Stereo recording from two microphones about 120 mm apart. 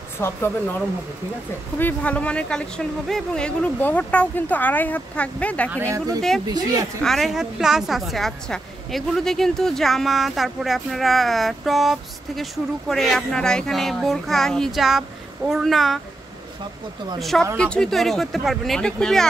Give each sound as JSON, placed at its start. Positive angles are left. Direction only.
{"t": 0.2, "sound": "speech", "side_deg": 20}
{"t": 1.8, "sound": "speech", "side_deg": 15}
{"t": 5.7, "sound": "speech", "side_deg": -20}
{"t": 7.0, "sound": "a woman's voice", "side_deg": 0}
{"t": 17.2, "sound": "a woman's voice", "side_deg": 0}